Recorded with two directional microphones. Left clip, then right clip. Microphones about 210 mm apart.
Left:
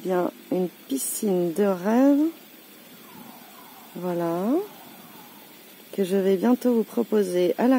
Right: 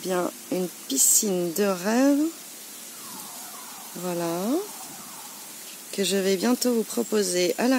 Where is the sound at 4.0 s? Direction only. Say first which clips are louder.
Left 2 dB; 15° right (ahead or behind).